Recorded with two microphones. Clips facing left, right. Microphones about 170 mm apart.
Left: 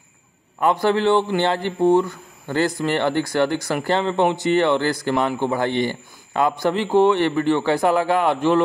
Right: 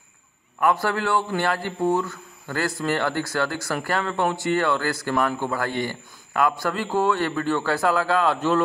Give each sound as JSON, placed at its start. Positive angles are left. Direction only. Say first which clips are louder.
{"t": 0.6, "sound": "speech", "louder": "left 4 dB", "side_deg": 20}